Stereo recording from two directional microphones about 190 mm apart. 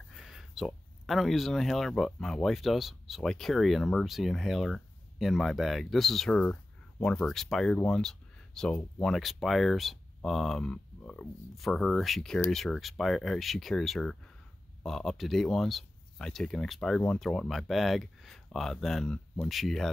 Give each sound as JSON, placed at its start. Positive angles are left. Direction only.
{"t": 0.1, "sound": "speech", "side_deg": 0}